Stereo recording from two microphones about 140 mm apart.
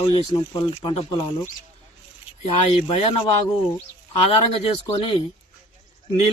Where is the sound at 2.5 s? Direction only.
40° left (ahead or behind).